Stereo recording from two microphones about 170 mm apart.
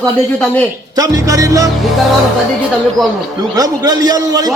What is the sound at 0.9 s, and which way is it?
Speech, 20° right (ahead or behind).